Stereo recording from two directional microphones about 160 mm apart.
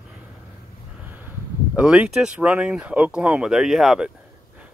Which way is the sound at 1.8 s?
5° right (ahead or behind).